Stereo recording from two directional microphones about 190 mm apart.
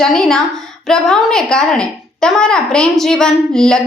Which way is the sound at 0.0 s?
5° left (ahead or behind).